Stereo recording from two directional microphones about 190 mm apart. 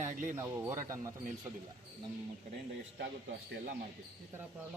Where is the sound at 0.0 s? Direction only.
45° right (ahead or behind).